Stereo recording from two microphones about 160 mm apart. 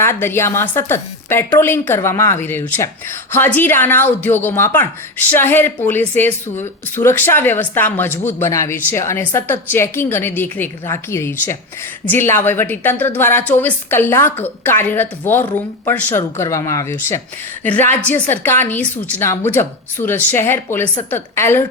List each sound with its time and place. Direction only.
0.0 s a woman's voice: 15° left (ahead or behind)